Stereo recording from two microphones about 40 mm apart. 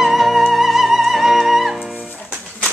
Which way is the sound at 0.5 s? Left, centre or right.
Centre.